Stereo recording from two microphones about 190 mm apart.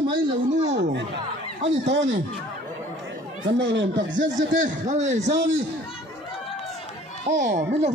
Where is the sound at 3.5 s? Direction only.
70° right (ahead or behind).